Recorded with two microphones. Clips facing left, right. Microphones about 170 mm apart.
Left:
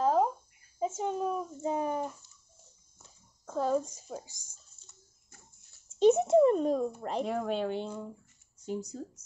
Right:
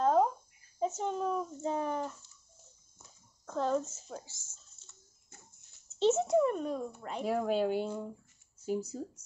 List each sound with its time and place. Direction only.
0.0 s a sound: 5° left (ahead or behind)
3.4 s speech: 10° left (ahead or behind)
5.9 s speech: 15° left (ahead or behind)
6.3 s speech: 30° left (ahead or behind)
7.2 s speech: 5° right (ahead or behind)